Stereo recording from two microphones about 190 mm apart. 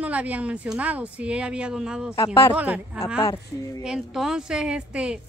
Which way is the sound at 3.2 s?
20° left (ahead or behind).